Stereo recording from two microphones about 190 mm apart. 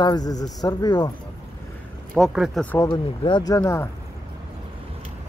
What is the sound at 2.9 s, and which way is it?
Speech, 25° left (ahead or behind).